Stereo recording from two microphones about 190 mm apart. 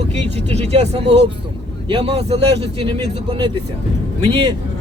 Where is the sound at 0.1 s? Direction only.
35° right (ahead or behind).